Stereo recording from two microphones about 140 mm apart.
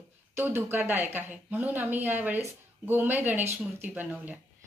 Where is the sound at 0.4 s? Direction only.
15° right (ahead or behind).